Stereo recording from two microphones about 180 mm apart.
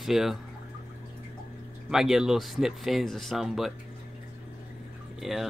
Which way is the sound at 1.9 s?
Centre (ahead or behind).